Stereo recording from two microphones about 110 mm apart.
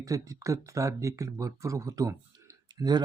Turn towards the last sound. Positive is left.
turn(degrees=-40)  # may be behind; listen again after turning